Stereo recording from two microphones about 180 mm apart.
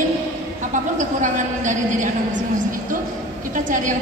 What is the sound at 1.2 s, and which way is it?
Speech, 45° right (ahead or behind).